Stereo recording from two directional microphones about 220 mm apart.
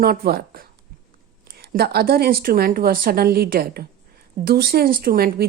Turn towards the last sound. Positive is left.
turn(degrees=-45)  # may be behind; listen again after turning